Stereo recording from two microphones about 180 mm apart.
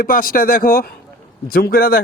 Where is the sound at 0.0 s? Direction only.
50° left (ahead or behind).